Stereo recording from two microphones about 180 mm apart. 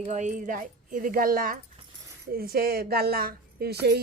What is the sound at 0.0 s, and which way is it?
Speech, 40° right (ahead or behind).